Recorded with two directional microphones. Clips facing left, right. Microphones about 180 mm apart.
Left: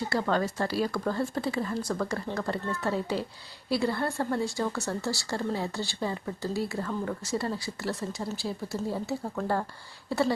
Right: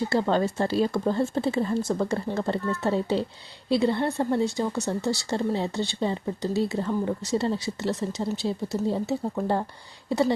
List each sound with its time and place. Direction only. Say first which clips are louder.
0.1 s a woman's voice: right 2 dB; 25° right (ahead or behind)